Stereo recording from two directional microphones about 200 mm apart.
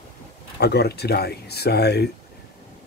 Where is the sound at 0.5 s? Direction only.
55° left (ahead or behind).